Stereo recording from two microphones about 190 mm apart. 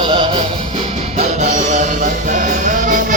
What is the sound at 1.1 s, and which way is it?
Music, 40° right (ahead or behind).